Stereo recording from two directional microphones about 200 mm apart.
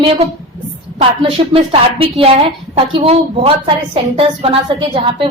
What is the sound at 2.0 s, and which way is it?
A woman's voice, 30° right (ahead or behind).